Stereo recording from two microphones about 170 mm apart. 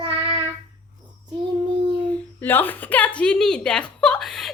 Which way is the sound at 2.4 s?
10° left (ahead or behind).